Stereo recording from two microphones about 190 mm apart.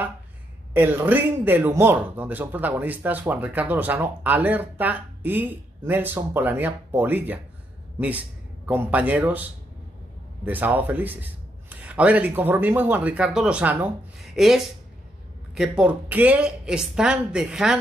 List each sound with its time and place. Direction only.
0.7 s speech: 10° right (ahead or behind)
8.6 s a woman's voice: 10° right (ahead or behind)